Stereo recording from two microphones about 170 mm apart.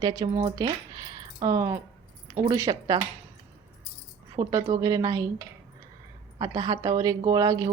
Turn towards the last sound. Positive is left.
turn(degrees=-20)  # may be behind; listen again after turning